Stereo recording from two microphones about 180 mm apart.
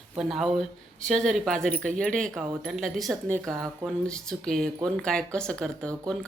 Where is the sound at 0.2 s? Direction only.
5° right (ahead or behind).